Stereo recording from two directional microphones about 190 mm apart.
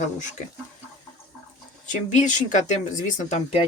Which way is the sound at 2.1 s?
40° left (ahead or behind).